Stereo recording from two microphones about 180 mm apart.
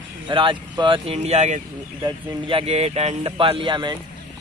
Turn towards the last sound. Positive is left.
turn(degrees=-25)  # may be behind; listen again after turning